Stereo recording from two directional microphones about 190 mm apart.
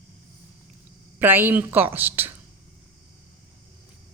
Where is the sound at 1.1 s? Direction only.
10° right (ahead or behind).